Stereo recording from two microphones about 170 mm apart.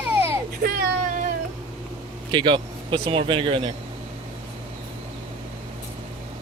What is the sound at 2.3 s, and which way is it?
Speech, 30° right (ahead or behind).